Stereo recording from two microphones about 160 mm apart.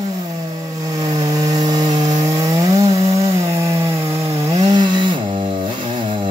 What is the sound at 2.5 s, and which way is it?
Chainsaw, 20° right (ahead or behind).